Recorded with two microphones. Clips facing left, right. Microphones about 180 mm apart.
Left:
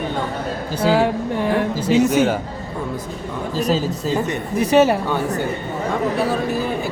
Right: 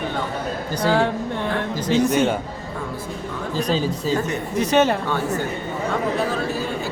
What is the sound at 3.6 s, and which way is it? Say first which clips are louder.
Speech: left 2 dB; 5° left (ahead or behind).